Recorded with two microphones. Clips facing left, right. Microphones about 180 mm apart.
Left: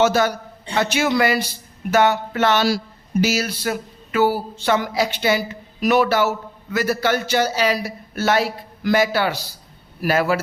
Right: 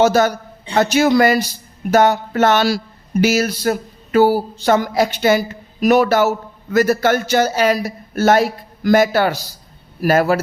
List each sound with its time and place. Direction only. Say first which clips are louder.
0.0 s speech: right 4 dB; 45° right (ahead or behind)
0.7 s a sound: right 6 dB; 40° right (ahead or behind)
2.6 s speech: right 2 dB; 60° right (ahead or behind); by 10.4 s 45° right (ahead or behind)